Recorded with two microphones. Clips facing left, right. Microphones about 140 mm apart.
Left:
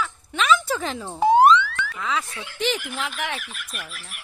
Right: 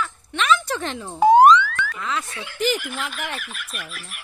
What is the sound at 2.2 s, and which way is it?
Speech, 90° right.